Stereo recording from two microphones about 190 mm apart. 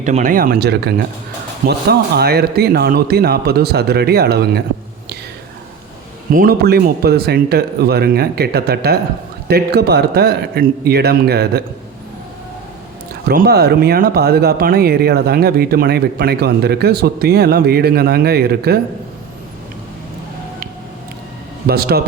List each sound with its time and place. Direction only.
0.0 s speech: 40° right (ahead or behind); by 4.6 s 60° right (ahead or behind)
6.3 s speech: 50° right (ahead or behind)
13.2 s speech: 55° right (ahead or behind)
21.7 s speech: 55° right (ahead or behind)